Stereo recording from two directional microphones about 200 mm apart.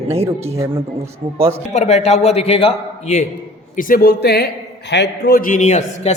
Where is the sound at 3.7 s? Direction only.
45° left (ahead or behind).